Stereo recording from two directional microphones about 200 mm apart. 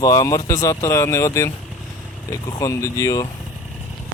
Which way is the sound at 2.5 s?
15° left (ahead or behind).